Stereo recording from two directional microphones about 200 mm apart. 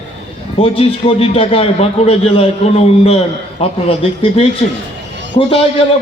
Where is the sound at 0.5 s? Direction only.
30° left (ahead or behind).